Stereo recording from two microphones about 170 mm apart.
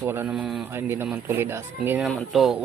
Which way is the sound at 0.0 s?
15° right (ahead or behind).